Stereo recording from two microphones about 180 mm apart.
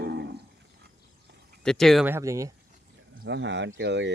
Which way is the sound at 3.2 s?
80° right.